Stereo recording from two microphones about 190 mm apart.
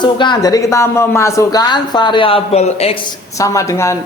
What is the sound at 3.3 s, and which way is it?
Speech, 15° left (ahead or behind).